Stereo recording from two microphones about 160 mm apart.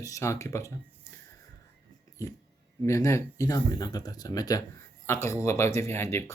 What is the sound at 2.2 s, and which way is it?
Speech, 20° left (ahead or behind).